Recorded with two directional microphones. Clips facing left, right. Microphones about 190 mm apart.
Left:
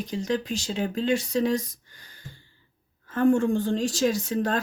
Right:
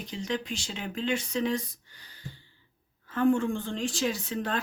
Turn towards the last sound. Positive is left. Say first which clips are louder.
# left 6 dB
turn(degrees=40)  # may be behind; listen again after turning